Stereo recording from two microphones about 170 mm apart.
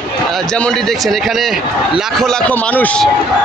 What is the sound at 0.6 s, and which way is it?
Speech, 5° left (ahead or behind).